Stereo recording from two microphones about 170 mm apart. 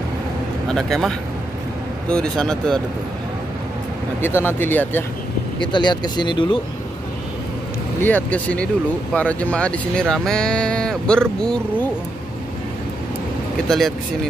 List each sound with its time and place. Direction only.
0.7 s speech: centre (ahead or behind)
4.2 s speech: 15° left (ahead or behind)
5.6 s speech: 25° left (ahead or behind)
8.0 s speech: 10° left (ahead or behind)
13.7 s speech: centre (ahead or behind)